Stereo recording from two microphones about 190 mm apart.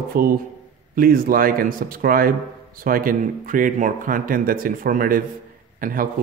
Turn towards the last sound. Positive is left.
turn(degrees=-45)  # may be behind; listen again after turning